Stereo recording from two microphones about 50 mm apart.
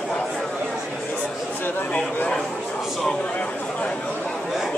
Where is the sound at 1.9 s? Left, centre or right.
Left.